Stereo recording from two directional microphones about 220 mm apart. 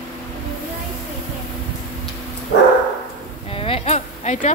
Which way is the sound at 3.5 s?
25° left (ahead or behind).